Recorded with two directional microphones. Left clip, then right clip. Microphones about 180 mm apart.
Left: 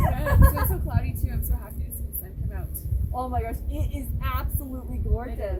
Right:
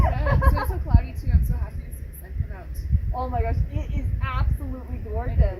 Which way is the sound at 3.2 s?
15° left (ahead or behind).